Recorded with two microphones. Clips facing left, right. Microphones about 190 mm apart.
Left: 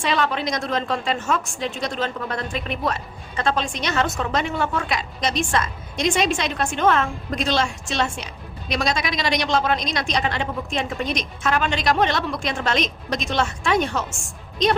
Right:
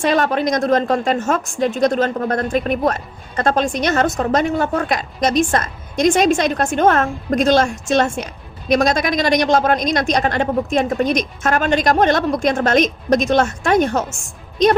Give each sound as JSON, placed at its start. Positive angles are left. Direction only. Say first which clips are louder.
{"t": 0.0, "sound": "a woman's voice", "louder": "right 6 dB", "side_deg": -45}